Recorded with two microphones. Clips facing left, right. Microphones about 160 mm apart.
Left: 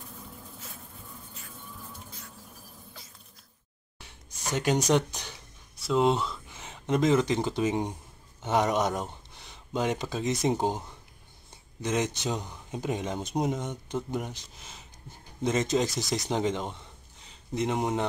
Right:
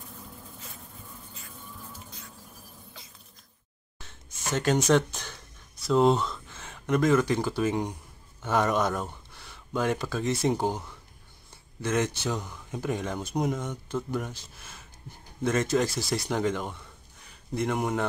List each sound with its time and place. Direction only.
0.0 s bee: centre (ahead or behind)
4.0 s a sound: 15° left (ahead or behind)
4.8 s speech: 15° left (ahead or behind)
5.8 s speech: centre (ahead or behind)
6.4 s speech: 15° left (ahead or behind)